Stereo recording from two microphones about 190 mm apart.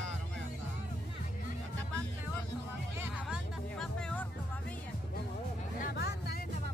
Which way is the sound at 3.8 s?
5° left (ahead or behind).